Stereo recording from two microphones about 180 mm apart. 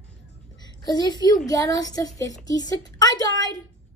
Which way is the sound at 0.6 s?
25° left (ahead or behind).